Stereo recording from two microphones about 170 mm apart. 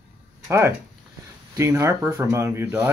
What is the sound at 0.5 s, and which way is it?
Speech, 15° right (ahead or behind).